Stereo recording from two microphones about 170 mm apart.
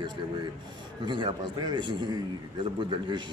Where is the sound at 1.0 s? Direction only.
25° right (ahead or behind).